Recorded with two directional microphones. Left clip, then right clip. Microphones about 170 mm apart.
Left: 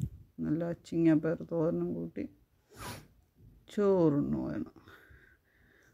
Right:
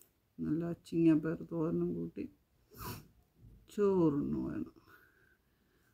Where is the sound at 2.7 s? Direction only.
15° left (ahead or behind).